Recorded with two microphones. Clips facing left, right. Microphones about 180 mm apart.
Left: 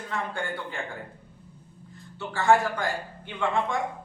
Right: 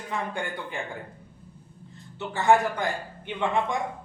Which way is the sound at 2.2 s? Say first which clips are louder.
Right 1 dB; 20° right (ahead or behind).